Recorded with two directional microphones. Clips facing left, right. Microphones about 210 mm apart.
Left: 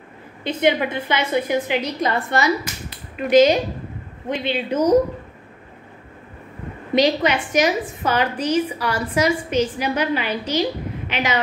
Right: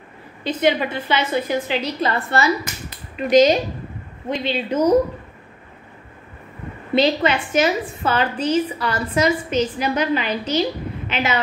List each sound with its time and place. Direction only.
0.5 s a woman's voice: 15° left (ahead or behind)
6.9 s a woman's voice: 10° left (ahead or behind)